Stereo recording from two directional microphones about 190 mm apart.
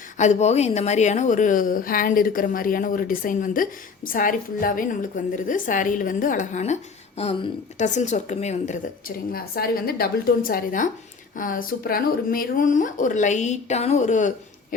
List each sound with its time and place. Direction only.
0.2 s a woman's voice: 35° left (ahead or behind)